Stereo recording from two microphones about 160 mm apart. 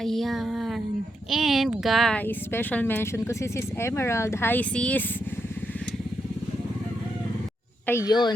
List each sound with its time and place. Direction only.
0.0 s speech: centre (ahead or behind)
2.2 s speech: 15° left (ahead or behind)
7.9 s speech: 15° left (ahead or behind)